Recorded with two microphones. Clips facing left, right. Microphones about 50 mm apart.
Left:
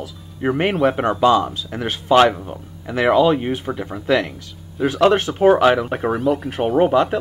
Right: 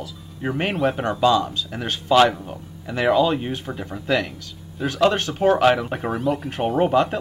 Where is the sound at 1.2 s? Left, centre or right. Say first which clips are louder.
Left 3 dB; left.